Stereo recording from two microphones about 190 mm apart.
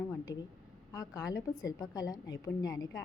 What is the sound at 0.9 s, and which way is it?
A woman's voice, 20° left (ahead or behind).